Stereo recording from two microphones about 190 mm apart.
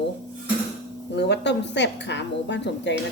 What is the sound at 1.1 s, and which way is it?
Speech, 65° left (ahead or behind).